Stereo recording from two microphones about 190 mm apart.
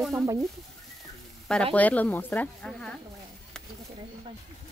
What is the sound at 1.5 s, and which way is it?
Speech, 5° left (ahead or behind).